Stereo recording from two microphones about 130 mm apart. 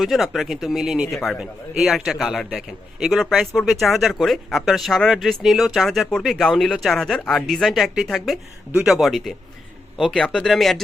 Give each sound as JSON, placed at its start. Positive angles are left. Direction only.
{"t": 0.0, "sound": "a man's voice", "side_deg": 0}